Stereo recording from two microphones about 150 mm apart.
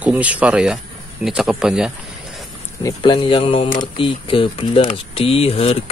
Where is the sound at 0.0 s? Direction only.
10° right (ahead or behind).